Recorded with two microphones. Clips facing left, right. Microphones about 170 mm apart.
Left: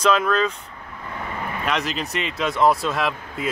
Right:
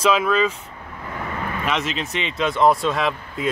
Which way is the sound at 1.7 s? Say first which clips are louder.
Even; centre (ahead or behind).